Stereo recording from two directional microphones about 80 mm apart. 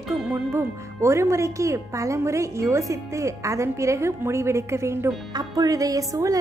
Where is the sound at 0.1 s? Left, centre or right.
Right.